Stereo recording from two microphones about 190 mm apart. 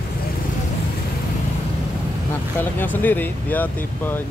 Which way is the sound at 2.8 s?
10° left (ahead or behind).